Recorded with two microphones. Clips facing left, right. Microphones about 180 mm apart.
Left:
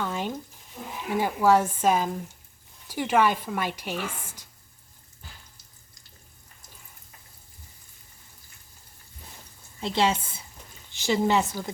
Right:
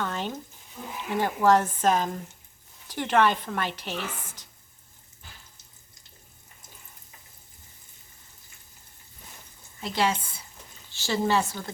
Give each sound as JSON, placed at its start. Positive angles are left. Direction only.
{"t": 0.0, "sound": "a sound", "side_deg": 10}
{"t": 1.1, "sound": "speech", "side_deg": 10}
{"t": 9.8, "sound": "a woman's voice", "side_deg": 25}